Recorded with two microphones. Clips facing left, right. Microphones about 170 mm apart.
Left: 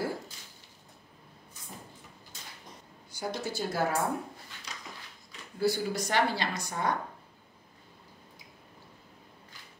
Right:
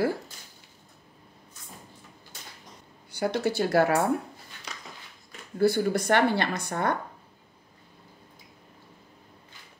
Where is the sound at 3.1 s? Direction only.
70° right (ahead or behind).